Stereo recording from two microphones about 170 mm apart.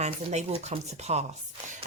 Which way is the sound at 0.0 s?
40° right (ahead or behind).